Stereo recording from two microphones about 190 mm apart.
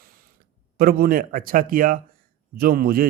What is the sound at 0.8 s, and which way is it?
Speech, 50° right (ahead or behind).